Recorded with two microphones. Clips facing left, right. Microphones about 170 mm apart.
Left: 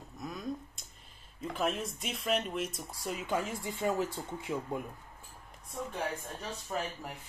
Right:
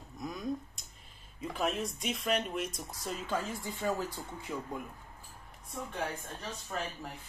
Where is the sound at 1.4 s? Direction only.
Centre (ahead or behind).